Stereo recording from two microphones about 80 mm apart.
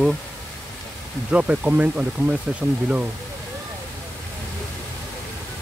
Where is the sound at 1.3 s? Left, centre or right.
Centre.